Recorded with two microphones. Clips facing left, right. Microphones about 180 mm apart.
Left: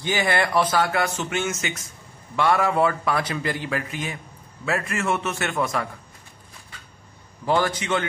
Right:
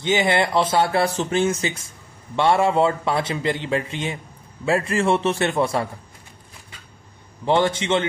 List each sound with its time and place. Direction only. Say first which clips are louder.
0.0 s a man's voice: right 3 dB; 20° right (ahead or behind)
7.4 s a man's voice: right 3 dB; 25° right (ahead or behind)